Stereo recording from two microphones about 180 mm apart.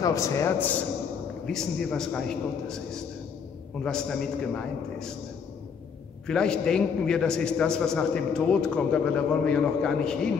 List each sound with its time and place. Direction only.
0.0 s a man's voice: 15° left (ahead or behind)
1.4 s a man's voice: 5° left (ahead or behind)
3.8 s a man's voice: 5° left (ahead or behind)
6.2 s a man's voice: 5° left (ahead or behind)